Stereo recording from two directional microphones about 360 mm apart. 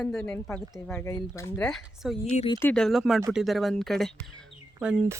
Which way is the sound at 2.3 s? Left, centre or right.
Centre.